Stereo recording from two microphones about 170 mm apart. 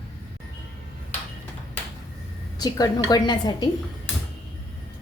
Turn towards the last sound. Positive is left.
turn(degrees=25)  # may be behind; listen again after turning